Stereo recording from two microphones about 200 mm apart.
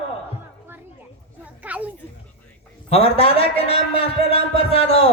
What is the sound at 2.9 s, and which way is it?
A man's voice, 30° left (ahead or behind).